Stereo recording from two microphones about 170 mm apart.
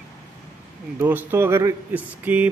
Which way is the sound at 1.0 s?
10° right (ahead or behind).